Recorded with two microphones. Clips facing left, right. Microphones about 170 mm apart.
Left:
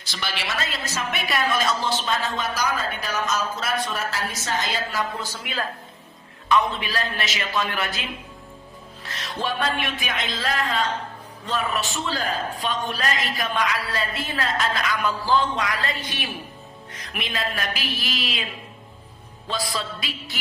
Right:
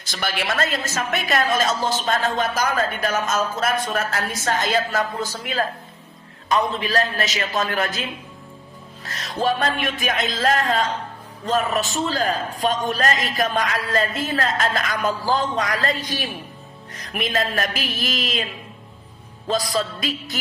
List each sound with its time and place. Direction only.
0.0 s a woman's voice: 45° right (ahead or behind)
9.0 s music: 40° right (ahead or behind)
9.8 s a woman's voice: 45° right (ahead or behind)
19.5 s a woman's voice: 40° right (ahead or behind)